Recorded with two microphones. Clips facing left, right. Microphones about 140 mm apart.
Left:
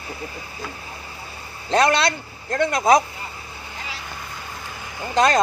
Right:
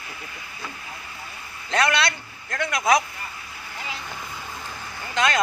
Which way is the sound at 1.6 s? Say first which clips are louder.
Left 4 dB; 30° left (ahead or behind).